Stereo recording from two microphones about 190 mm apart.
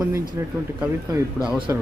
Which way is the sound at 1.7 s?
15° right (ahead or behind).